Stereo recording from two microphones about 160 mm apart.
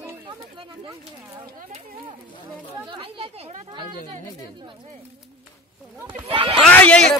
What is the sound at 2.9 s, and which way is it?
Speech, 35° right (ahead or behind).